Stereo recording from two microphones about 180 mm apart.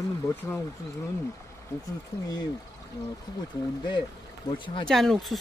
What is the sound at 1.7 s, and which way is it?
Speech, 20° left (ahead or behind).